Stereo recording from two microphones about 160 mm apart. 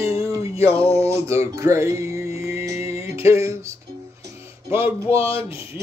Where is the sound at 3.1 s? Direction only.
20° right (ahead or behind).